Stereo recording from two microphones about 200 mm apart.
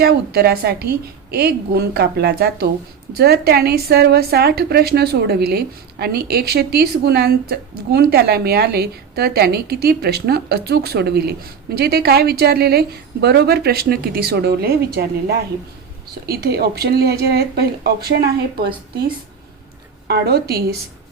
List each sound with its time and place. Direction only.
0.0 s a woman's voice: 50° right (ahead or behind)
20.1 s a woman's voice: 55° right (ahead or behind)